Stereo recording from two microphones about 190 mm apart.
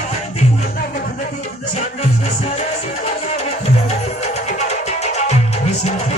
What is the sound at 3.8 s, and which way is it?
Music, 35° left (ahead or behind).